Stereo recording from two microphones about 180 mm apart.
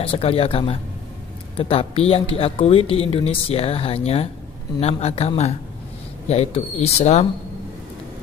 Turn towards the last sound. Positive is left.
turn(degrees=35)  # may be behind; listen again after turning